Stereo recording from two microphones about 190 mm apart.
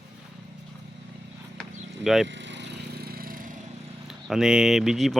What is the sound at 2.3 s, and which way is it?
Vehicle, 70° right (ahead or behind).